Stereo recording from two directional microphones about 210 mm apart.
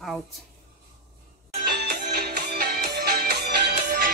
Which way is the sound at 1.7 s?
50° right (ahead or behind).